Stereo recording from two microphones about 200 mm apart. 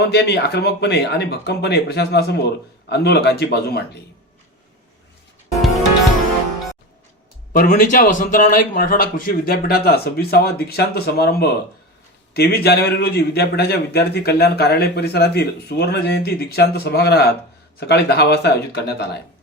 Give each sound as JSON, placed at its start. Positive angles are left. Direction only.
{"t": 0.0, "sound": "speech", "side_deg": 55}
{"t": 7.5, "sound": "a man's voice", "side_deg": 45}